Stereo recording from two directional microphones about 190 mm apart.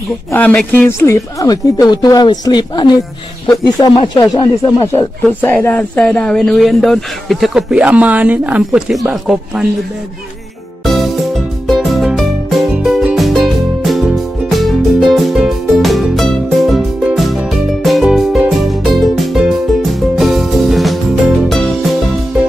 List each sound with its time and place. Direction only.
0.3 s a woman's voice: 10° left (ahead or behind)
5.4 s speech: 10° left (ahead or behind)
10.9 s music: centre (ahead or behind)